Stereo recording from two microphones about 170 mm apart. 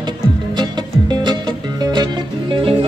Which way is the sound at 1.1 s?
25° right (ahead or behind).